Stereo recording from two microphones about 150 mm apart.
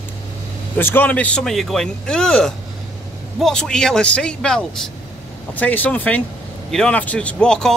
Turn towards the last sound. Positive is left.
turn(degrees=5)  # may be behind; listen again after turning